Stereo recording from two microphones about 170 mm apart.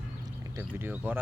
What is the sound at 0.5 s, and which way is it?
Speech, 15° right (ahead or behind).